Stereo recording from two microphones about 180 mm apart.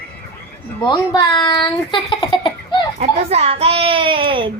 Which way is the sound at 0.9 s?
25° left (ahead or behind).